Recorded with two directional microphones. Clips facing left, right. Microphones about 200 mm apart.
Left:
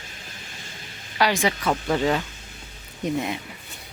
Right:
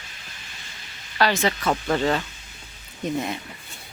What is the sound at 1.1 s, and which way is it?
Speech, 15° left (ahead or behind).